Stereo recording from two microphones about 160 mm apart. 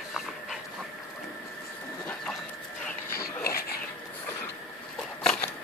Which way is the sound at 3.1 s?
65° left (ahead or behind).